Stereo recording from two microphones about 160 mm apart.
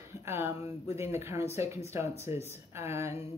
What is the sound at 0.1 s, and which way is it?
Speech, 15° right (ahead or behind).